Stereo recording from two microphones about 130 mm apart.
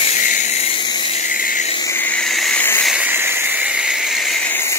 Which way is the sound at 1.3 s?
90° left.